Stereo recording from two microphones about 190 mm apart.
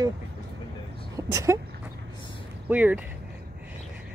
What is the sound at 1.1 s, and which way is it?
Speech, 15° right (ahead or behind).